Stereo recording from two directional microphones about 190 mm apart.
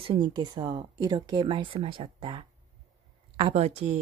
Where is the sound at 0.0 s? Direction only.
25° right (ahead or behind).